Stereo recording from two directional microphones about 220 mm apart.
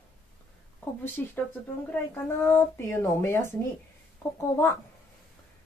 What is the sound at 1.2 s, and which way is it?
A woman's voice, 10° left (ahead or behind).